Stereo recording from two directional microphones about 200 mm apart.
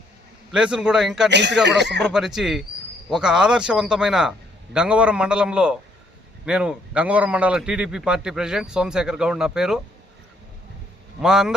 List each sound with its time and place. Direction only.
0.5 s a man's voice: 5° right (ahead or behind)
1.3 s speech: 60° right (ahead or behind)
2.1 s a man's voice: centre (ahead or behind)
11.2 s a man's voice: centre (ahead or behind)